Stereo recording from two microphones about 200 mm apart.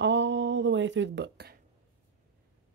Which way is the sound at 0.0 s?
65° right (ahead or behind).